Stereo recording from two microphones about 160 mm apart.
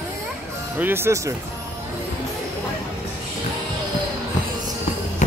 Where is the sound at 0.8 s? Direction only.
15° right (ahead or behind).